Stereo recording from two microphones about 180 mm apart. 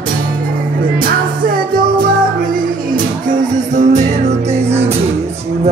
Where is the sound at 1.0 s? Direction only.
50° right (ahead or behind).